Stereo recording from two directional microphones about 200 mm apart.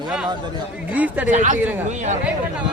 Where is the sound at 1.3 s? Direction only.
35° right (ahead or behind).